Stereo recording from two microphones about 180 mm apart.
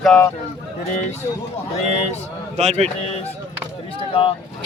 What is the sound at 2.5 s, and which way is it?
Speech, 35° right (ahead or behind).